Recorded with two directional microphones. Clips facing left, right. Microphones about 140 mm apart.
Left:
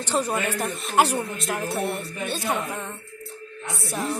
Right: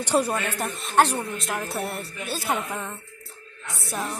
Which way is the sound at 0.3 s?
Centre (ahead or behind).